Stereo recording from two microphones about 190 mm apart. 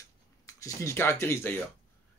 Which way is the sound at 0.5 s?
15° left (ahead or behind).